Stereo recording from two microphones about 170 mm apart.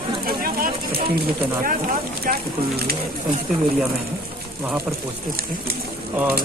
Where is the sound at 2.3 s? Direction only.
60° right (ahead or behind).